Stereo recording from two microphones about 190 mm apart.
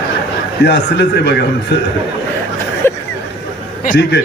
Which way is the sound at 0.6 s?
65° left (ahead or behind).